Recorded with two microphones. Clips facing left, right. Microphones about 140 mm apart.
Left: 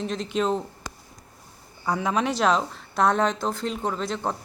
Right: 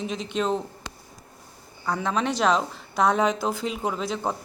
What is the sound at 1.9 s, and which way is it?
Speech, 5° left (ahead or behind).